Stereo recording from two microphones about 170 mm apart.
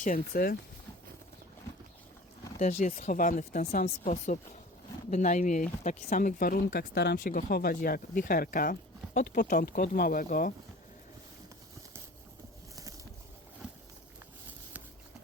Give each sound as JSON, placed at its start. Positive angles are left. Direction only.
{"t": 0.0, "sound": "speech", "side_deg": 55}
{"t": 2.6, "sound": "speech", "side_deg": 45}